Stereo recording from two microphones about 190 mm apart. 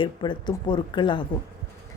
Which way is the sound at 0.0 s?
25° left (ahead or behind).